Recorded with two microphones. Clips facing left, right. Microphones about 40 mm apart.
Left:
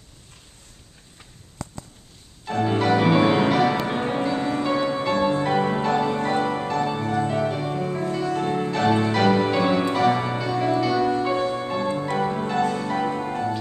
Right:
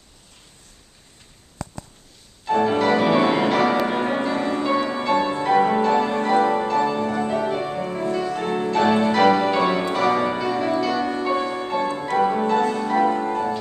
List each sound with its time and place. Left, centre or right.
2.5 s music: centre
4.6 s music: centre